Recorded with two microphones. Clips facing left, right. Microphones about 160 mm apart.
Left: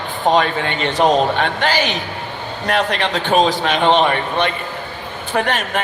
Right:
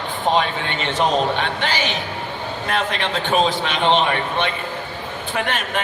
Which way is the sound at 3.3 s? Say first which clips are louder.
Left 4 dB; 40° left (ahead or behind).